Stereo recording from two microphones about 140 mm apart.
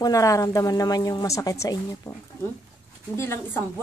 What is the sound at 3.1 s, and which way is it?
Speech, 15° left (ahead or behind).